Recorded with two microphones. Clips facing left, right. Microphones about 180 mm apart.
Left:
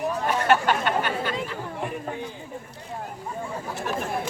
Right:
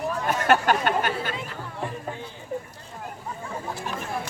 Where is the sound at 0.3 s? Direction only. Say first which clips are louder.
Right 1 dB; 45° right (ahead or behind).